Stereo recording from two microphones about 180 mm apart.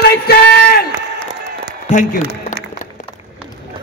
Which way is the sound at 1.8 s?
45° left (ahead or behind).